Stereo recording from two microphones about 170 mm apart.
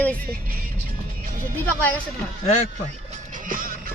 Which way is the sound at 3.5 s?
55° right (ahead or behind).